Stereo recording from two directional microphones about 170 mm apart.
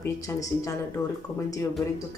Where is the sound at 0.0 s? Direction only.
20° left (ahead or behind).